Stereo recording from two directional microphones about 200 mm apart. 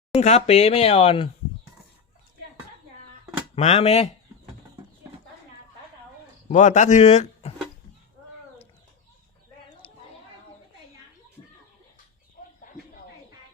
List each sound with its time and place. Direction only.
0.2 s speech: 35° left (ahead or behind)
3.5 s speech: 30° left (ahead or behind)
6.5 s speech: 40° left (ahead or behind)
12.4 s a sound: 40° left (ahead or behind)